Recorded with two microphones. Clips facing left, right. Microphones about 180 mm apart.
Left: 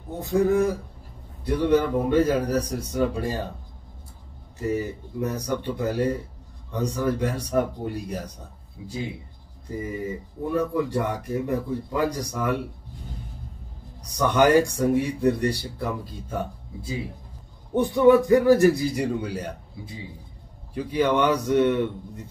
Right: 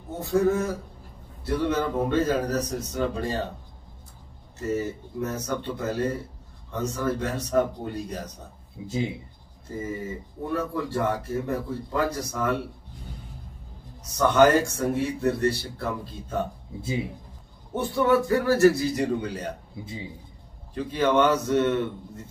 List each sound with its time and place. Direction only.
0.2 s speech: 15° left (ahead or behind)
4.6 s speech: 15° left (ahead or behind)
8.8 s speech: 20° right (ahead or behind)
10.5 s speech: 15° left (ahead or behind)
14.0 s speech: 15° left (ahead or behind)
17.7 s speech: 15° left (ahead or behind)
20.7 s speech: 15° left (ahead or behind)